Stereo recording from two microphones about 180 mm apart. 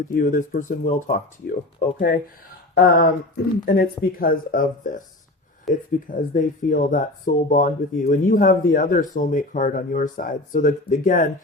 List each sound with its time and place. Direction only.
0.1 s speech: 50° left (ahead or behind)
5.7 s speech: centre (ahead or behind)
6.1 s speech: 45° left (ahead or behind)